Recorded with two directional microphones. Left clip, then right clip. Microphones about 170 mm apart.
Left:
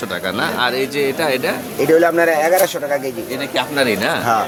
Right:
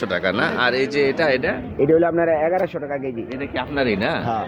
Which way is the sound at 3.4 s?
10° right (ahead or behind).